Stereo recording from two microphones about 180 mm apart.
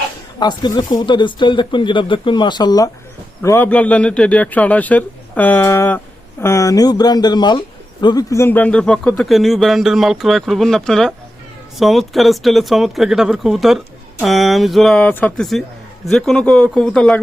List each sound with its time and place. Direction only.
0.3 s a man's voice: 25° left (ahead or behind); by 17.2 s 5° left (ahead or behind)